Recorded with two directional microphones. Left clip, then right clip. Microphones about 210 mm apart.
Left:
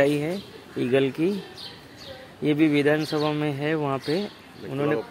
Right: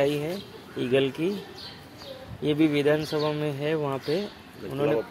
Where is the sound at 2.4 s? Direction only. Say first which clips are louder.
Left 2 dB; 30° left (ahead or behind).